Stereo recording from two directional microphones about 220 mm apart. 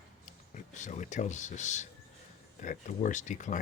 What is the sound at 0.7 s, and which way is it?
Speech, 35° left (ahead or behind).